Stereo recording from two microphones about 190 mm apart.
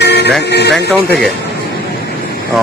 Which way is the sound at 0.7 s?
Centre (ahead or behind).